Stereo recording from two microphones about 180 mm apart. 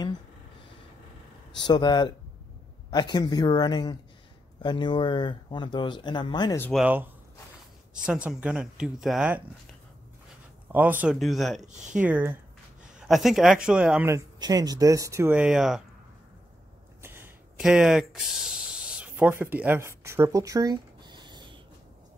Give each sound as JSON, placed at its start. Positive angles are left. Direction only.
{"t": 1.7, "sound": "speech", "side_deg": 25}
{"t": 6.7, "sound": "speech", "side_deg": -5}
{"t": 10.7, "sound": "speech", "side_deg": -10}
{"t": 11.6, "sound": "speech", "side_deg": -40}
{"t": 11.9, "sound": "speech", "side_deg": -10}
{"t": 17.0, "sound": "a sound", "side_deg": -15}
{"t": 17.6, "sound": "speech", "side_deg": -5}